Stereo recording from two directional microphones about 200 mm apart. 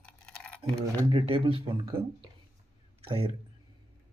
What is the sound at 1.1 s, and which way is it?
Speech, 25° right (ahead or behind).